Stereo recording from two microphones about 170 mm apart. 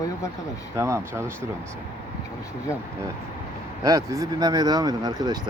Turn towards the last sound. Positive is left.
turn(degrees=-25)  # may be behind; listen again after turning